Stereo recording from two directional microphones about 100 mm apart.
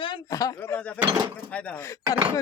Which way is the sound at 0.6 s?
20° left (ahead or behind).